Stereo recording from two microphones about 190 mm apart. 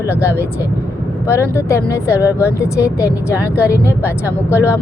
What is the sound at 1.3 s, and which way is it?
Speech, 15° left (ahead or behind).